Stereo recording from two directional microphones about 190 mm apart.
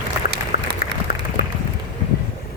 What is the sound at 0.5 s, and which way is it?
Applause, 50° left (ahead or behind).